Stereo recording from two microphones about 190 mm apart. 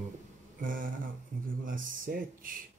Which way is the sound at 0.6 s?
45° right (ahead or behind).